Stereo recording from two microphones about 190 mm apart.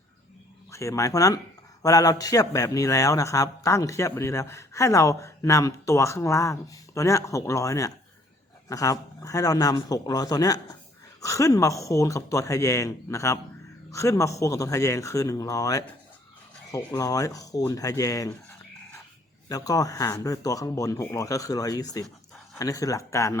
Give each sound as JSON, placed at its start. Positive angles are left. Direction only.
{"t": 0.7, "sound": "a man's voice", "side_deg": 15}
{"t": 19.5, "sound": "a man's voice", "side_deg": 20}